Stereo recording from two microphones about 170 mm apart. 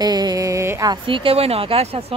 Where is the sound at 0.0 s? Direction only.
25° right (ahead or behind).